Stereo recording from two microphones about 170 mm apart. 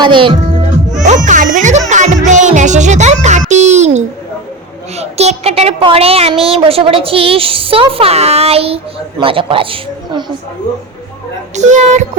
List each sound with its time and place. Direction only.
0.0 s speech: 30° right (ahead or behind)
0.9 s speech: 45° right (ahead or behind); by 10.3 s 25° right (ahead or behind)
11.5 s speech: 45° right (ahead or behind)